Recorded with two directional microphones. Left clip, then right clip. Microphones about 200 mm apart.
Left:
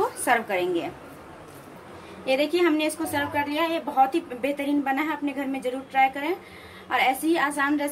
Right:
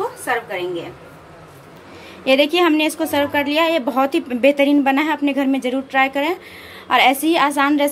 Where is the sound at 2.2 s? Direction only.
40° right (ahead or behind).